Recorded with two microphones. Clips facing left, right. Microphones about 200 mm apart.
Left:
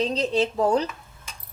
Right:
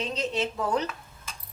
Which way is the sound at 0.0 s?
35° left (ahead or behind).